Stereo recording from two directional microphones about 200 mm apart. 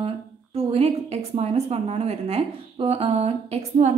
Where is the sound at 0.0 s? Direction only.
30° right (ahead or behind).